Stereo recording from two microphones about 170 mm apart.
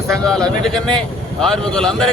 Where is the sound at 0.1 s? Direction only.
5° left (ahead or behind).